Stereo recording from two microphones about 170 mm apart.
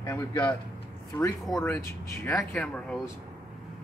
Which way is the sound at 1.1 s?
15° left (ahead or behind).